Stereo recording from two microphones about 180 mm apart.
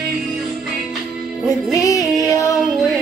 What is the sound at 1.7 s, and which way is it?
Music, 20° left (ahead or behind).